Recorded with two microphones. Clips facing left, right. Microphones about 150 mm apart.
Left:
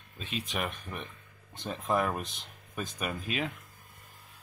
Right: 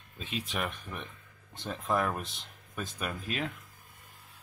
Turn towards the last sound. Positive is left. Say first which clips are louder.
# left 1 dB
turn(degrees=5)  # may be behind; listen again after turning